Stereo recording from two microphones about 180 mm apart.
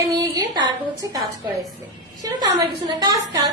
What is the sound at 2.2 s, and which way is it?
Speech, 20° right (ahead or behind).